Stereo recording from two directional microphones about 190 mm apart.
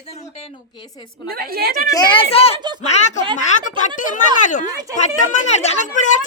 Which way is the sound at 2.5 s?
25° right (ahead or behind).